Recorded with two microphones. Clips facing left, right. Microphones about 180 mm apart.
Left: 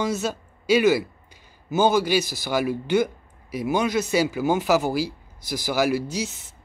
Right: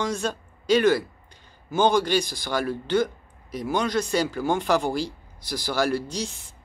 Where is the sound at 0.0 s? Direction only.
5° left (ahead or behind).